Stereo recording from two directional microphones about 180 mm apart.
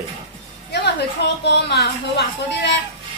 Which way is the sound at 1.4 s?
70° left (ahead or behind).